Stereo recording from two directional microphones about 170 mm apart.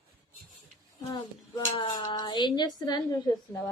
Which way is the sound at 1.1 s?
25° left (ahead or behind).